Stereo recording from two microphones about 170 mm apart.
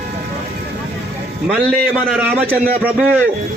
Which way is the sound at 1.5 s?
5° right (ahead or behind).